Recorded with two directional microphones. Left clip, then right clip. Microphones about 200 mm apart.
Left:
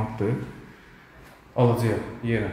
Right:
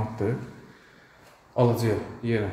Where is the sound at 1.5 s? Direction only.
10° right (ahead or behind).